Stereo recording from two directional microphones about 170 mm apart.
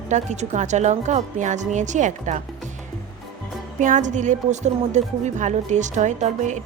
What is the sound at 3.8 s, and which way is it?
Speech, 45° right (ahead or behind).